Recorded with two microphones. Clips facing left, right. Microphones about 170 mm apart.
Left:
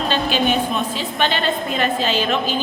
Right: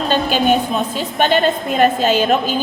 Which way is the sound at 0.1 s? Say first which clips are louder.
Right 4 dB; 45° right (ahead or behind).